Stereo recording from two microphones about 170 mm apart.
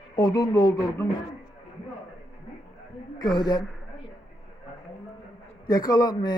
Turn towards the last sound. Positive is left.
turn(degrees=25)  # may be behind; listen again after turning